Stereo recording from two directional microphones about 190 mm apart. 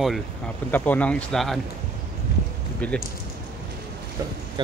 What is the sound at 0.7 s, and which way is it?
Speech, 10° left (ahead or behind).